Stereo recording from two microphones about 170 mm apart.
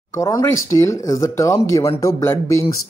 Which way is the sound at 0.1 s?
20° left (ahead or behind).